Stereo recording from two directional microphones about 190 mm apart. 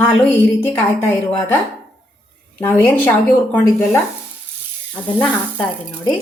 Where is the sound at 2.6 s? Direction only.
10° left (ahead or behind).